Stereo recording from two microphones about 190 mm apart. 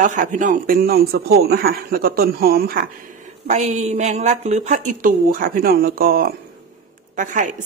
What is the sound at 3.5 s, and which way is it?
A woman's voice, 40° right (ahead or behind).